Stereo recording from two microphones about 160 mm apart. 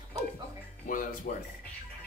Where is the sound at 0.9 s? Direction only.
60° left (ahead or behind).